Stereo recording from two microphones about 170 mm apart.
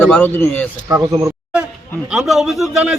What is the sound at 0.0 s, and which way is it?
Speech, 10° left (ahead or behind).